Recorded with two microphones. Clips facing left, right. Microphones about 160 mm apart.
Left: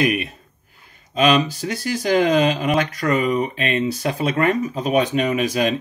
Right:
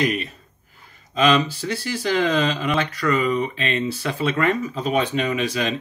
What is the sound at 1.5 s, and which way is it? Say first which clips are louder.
Speech: left 2 dB; 45° left (ahead or behind).